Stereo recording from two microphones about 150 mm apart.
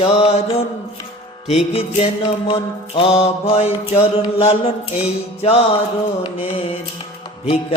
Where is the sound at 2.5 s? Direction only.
35° left (ahead or behind).